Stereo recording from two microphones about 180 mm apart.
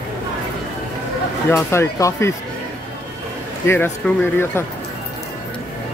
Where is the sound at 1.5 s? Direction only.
15° left (ahead or behind).